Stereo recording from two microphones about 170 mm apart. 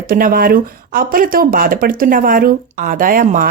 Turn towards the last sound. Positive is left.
turn(degrees=-55)  # may be behind; listen again after turning